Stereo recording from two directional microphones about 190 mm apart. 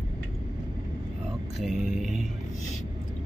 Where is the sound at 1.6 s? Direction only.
Centre (ahead or behind).